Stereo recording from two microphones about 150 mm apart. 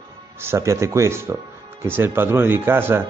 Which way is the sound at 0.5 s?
20° right (ahead or behind).